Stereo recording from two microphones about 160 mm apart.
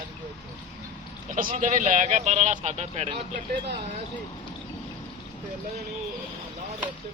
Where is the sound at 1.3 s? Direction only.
55° right (ahead or behind).